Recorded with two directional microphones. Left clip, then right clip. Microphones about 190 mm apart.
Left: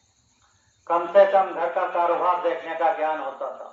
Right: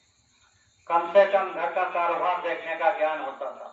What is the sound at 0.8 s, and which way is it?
Speech, 25° left (ahead or behind).